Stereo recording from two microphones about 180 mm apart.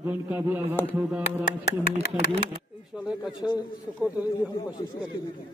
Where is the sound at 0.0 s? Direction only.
10° right (ahead or behind).